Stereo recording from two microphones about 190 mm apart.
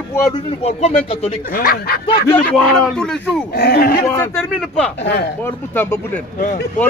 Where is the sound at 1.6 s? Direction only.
50° left (ahead or behind).